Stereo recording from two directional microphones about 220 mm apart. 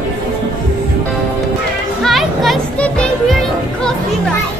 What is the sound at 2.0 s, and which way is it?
Music, centre (ahead or behind).